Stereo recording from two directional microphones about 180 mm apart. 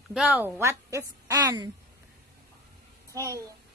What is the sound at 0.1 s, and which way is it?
A woman's voice, 5° right (ahead or behind).